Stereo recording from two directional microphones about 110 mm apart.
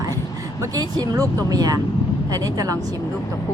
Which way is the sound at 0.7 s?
35° right (ahead or behind).